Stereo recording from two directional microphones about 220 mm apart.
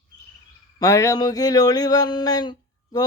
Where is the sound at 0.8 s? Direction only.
15° left (ahead or behind).